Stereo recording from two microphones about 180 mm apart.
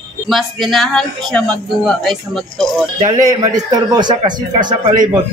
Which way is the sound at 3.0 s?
20° right (ahead or behind).